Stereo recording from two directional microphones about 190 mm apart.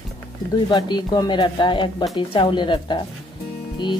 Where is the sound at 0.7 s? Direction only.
20° left (ahead or behind).